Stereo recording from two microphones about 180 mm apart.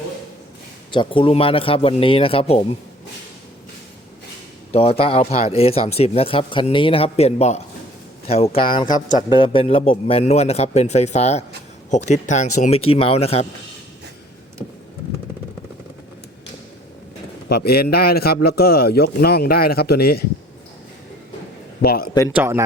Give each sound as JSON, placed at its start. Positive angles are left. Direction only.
{"t": 0.9, "sound": "speech", "side_deg": 30}
{"t": 4.7, "sound": "a man's voice", "side_deg": 35}
{"t": 17.5, "sound": "a man's voice", "side_deg": 60}
{"t": 21.8, "sound": "a man's voice", "side_deg": 55}
{"t": 22.1, "sound": "a man's voice", "side_deg": 25}
{"t": 22.4, "sound": "speech", "side_deg": -15}